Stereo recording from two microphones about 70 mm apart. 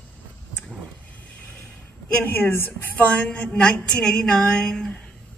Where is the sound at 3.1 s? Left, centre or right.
Centre.